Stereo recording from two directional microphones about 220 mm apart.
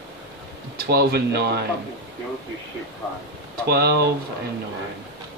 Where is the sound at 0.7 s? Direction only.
45° right (ahead or behind).